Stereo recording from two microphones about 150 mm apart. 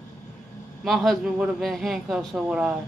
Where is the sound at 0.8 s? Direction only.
Centre (ahead or behind).